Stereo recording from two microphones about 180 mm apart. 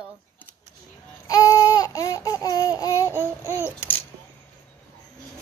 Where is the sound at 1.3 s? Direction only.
20° left (ahead or behind).